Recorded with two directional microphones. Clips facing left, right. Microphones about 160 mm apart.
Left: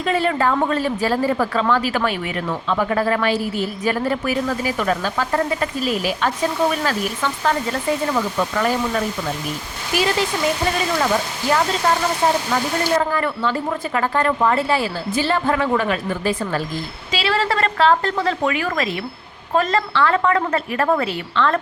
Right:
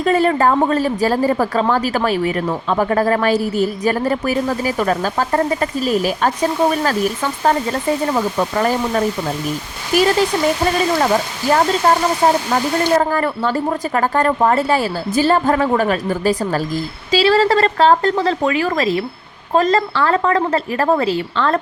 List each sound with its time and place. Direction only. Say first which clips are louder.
0.0 s speech: right 5 dB; 40° right (ahead or behind)
11.5 s speech: right 4 dB; 40° right (ahead or behind)